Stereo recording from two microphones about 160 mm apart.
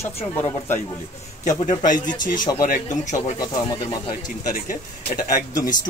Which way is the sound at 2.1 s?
25° left (ahead or behind).